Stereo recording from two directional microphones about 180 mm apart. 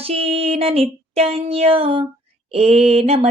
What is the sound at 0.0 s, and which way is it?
Speech, 35° right (ahead or behind).